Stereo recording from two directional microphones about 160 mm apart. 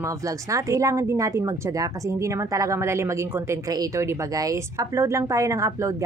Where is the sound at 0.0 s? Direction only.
20° right (ahead or behind).